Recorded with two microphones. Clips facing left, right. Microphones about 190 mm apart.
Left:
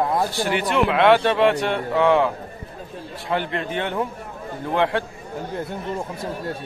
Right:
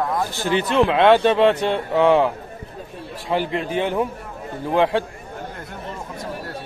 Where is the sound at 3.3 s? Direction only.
15° right (ahead or behind).